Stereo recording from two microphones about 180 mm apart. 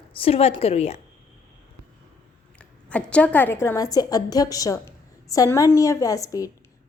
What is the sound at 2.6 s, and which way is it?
A woman's voice, 5° left (ahead or behind).